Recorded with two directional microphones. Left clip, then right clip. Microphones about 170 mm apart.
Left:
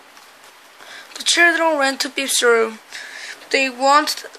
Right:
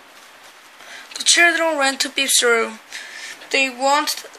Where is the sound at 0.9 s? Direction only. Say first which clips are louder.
Right 2 dB; 25° left (ahead or behind).